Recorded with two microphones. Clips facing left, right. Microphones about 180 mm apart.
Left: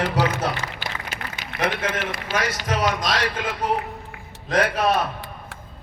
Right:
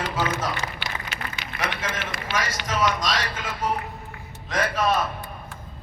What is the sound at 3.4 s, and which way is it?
A man's voice, 70° left (ahead or behind).